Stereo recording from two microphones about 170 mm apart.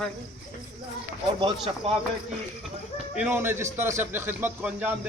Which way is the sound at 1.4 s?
30° right (ahead or behind).